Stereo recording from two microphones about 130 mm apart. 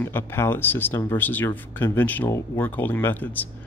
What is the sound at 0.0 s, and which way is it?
Speech, 15° left (ahead or behind).